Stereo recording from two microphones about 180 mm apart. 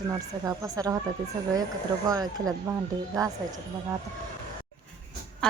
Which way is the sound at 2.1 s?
20° right (ahead or behind).